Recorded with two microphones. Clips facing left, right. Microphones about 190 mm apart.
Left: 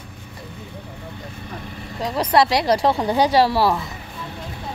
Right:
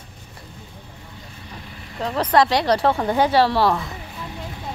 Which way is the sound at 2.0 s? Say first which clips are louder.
Even; 10° left (ahead or behind).